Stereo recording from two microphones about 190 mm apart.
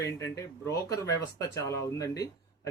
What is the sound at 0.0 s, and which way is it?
Speech, 15° left (ahead or behind).